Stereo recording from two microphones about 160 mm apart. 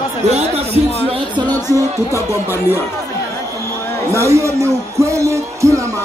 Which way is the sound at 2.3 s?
15° right (ahead or behind).